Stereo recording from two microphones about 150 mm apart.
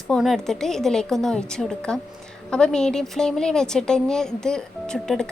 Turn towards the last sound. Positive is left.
turn(degrees=5)  # may be behind; listen again after turning